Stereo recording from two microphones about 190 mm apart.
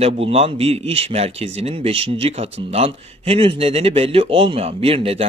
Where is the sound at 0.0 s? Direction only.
30° right (ahead or behind).